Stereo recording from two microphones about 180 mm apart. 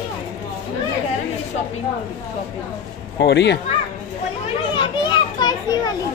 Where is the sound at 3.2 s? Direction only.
70° left (ahead or behind).